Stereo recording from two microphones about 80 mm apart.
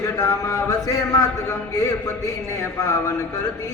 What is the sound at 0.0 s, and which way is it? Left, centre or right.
Speech, left.